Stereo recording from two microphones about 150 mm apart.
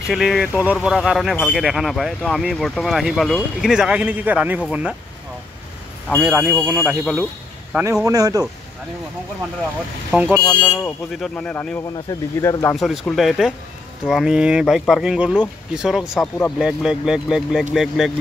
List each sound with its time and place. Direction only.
0.0 s speech: centre (ahead or behind)
6.2 s speech: 15° right (ahead or behind)
8.0 s speech: 25° right (ahead or behind)
10.1 s speech: 10° right (ahead or behind)
10.5 s speech: 10° left (ahead or behind)
12.1 s speech: 20° left (ahead or behind)
12.7 s speech: centre (ahead or behind)